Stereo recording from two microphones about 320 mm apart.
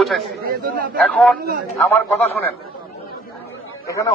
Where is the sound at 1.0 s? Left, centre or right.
Centre.